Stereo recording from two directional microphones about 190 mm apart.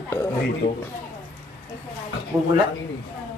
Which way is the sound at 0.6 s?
60° left (ahead or behind).